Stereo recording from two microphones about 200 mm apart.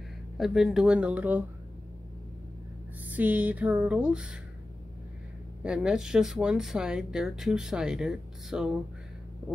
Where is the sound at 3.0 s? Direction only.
10° right (ahead or behind).